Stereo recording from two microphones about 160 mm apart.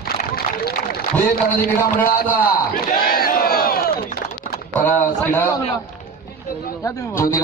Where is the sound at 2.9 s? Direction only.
65° left (ahead or behind).